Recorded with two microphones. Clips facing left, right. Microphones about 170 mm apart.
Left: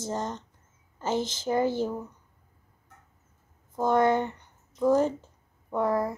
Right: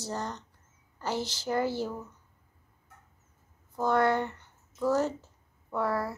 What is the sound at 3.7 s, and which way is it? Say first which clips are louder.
Speech: left 3 dB; 20° left (ahead or behind).